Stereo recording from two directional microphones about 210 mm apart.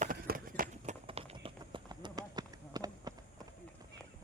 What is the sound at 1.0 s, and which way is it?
Clip-clop, 25° right (ahead or behind).